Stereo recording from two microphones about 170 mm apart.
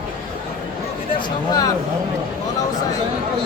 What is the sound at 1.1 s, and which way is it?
Speech, 20° left (ahead or behind).